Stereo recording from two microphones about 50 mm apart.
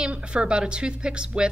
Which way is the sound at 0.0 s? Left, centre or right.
Centre.